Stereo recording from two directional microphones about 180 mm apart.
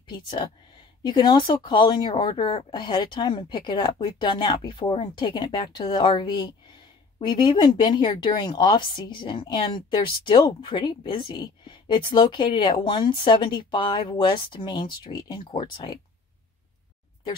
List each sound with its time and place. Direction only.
1.0 s speech: 25° left (ahead or behind)